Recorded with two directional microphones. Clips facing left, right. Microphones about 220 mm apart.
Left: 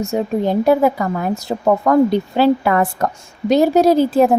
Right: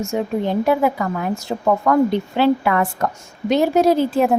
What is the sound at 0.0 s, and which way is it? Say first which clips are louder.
A woman's voice: left 3 dB; 35° left (ahead or behind).